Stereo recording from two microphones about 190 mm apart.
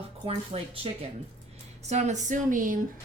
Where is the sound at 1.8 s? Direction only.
35° right (ahead or behind).